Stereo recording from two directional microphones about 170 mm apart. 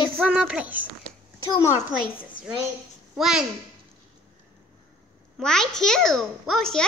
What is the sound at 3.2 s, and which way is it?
Speech, 5° right (ahead or behind).